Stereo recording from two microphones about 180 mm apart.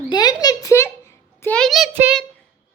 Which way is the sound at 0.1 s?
20° left (ahead or behind).